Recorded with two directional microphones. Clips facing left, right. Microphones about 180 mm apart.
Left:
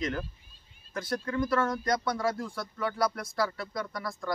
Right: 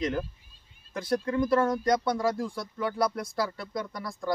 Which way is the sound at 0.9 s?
20° right (ahead or behind).